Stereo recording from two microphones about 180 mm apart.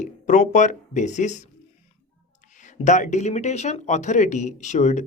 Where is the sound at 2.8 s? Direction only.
40° left (ahead or behind).